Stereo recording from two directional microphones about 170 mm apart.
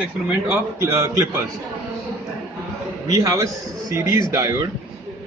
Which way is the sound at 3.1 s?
20° right (ahead or behind).